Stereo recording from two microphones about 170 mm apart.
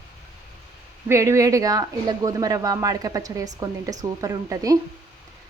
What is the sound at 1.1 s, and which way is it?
Speech, 15° right (ahead or behind).